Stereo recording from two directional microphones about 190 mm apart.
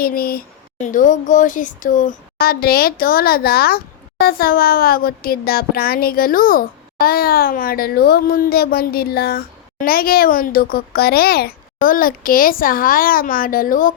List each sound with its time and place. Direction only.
0.0 s a child's voice: 50° left (ahead or behind)